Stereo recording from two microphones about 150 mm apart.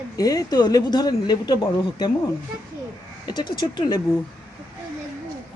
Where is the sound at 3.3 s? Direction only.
30° left (ahead or behind).